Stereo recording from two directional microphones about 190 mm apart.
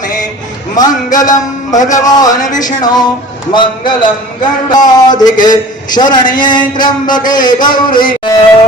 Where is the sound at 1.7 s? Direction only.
40° left (ahead or behind).